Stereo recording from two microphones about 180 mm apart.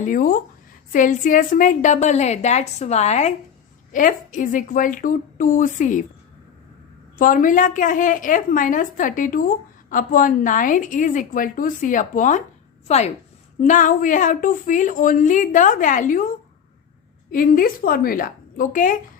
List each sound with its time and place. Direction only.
0.0 s a woman's voice: 50° left (ahead or behind)
7.2 s a woman's voice: 50° left (ahead or behind)
17.3 s a woman's voice: 50° left (ahead or behind)